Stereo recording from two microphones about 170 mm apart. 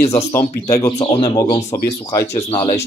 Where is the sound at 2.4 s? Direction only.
30° left (ahead or behind).